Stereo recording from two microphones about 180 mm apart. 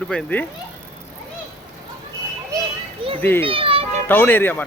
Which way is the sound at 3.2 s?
10° left (ahead or behind).